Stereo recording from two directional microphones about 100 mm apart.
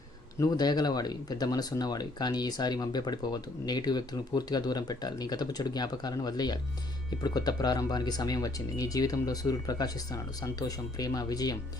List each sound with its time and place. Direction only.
0.3 s speech: 40° left (ahead or behind)